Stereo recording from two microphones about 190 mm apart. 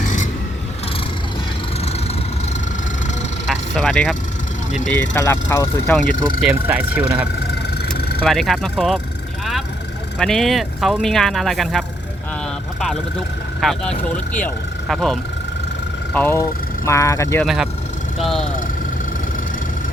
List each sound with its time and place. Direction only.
0.0 s vehicle: 40° left (ahead or behind)
3.4 s vehicle: centre (ahead or behind)
4.9 s speech: 10° left (ahead or behind)
6.0 s speech: 5° right (ahead or behind)
7.3 s a sound: 60° left (ahead or behind)
8.2 s speech: centre (ahead or behind)
10.2 s speech: 5° left (ahead or behind)
13.6 s speech: centre (ahead or behind)
17.4 s speech: centre (ahead or behind)
18.2 s vehicle: centre (ahead or behind)